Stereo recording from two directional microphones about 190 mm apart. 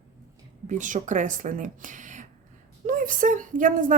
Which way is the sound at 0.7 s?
40° right (ahead or behind).